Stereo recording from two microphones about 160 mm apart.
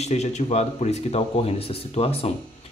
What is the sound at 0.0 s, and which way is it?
A man's voice, 45° left (ahead or behind).